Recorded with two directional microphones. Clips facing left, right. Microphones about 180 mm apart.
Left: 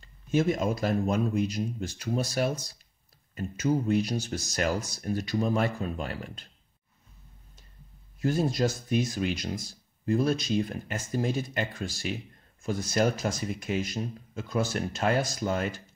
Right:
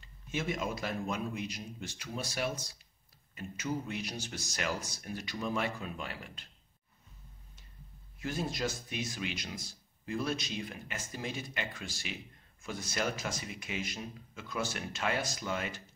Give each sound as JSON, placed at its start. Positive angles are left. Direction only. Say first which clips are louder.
{"t": 0.0, "sound": "speech", "louder": "left 11 dB", "side_deg": 40}
{"t": 8.2, "sound": "speech", "louder": "left 9 dB", "side_deg": 40}